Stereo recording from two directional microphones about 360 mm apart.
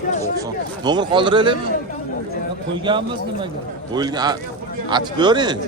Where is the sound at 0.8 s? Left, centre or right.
Centre.